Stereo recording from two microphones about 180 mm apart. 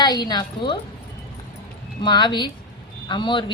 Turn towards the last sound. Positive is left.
turn(degrees=25)  # may be behind; listen again after turning